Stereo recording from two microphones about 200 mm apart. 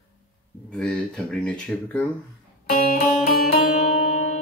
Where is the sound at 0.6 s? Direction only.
5° left (ahead or behind).